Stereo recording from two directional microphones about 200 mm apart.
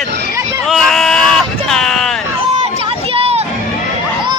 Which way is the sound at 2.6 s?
30° right (ahead or behind).